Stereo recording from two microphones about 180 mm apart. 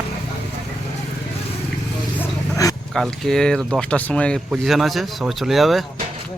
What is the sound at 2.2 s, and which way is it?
Vehicle, 20° left (ahead or behind).